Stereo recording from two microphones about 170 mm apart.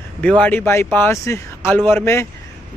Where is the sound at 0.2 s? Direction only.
10° left (ahead or behind).